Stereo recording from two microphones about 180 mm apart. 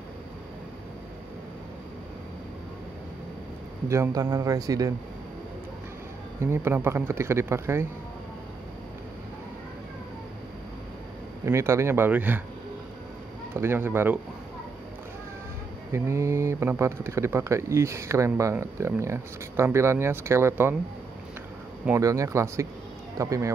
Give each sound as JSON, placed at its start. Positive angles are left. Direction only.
{"t": 3.9, "sound": "speech", "side_deg": -20}
{"t": 6.4, "sound": "speech", "side_deg": -15}
{"t": 11.4, "sound": "speech", "side_deg": -15}
{"t": 13.6, "sound": "speech", "side_deg": -15}
{"t": 15.9, "sound": "speech", "side_deg": -15}
{"t": 21.8, "sound": "speech", "side_deg": -15}